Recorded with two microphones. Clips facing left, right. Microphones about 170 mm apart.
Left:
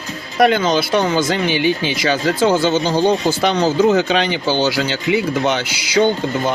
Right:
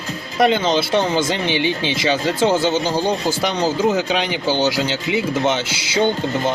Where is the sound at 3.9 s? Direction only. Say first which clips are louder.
Left 4 dB; 10° right (ahead or behind).